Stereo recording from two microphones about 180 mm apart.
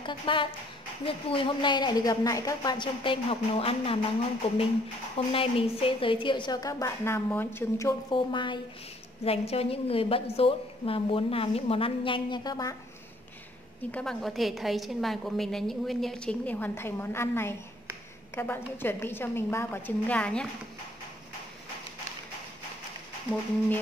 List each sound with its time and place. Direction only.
0.0 s a woman's voice: 25° left (ahead or behind)
5.1 s a woman's voice: 30° left (ahead or behind)
13.9 s a woman's voice: centre (ahead or behind)